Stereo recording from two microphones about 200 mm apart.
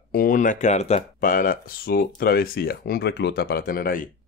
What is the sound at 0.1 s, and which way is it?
Speech, 45° left (ahead or behind).